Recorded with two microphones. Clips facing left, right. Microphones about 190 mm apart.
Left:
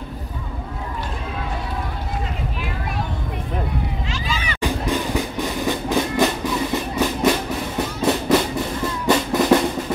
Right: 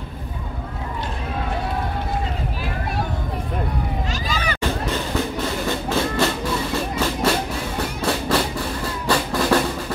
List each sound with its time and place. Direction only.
4.1 s a sound: 40° right (ahead or behind)
4.6 s music: 15° left (ahead or behind)
8.0 s drum: 20° left (ahead or behind)